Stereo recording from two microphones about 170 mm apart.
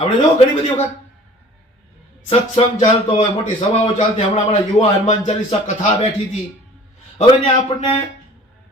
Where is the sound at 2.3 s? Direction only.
35° left (ahead or behind).